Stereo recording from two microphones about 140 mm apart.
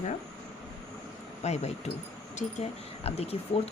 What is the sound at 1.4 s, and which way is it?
Speech, 50° left (ahead or behind).